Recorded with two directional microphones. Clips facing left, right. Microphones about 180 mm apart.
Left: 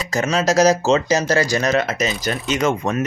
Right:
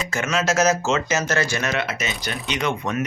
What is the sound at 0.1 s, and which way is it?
Speech, 35° left (ahead or behind).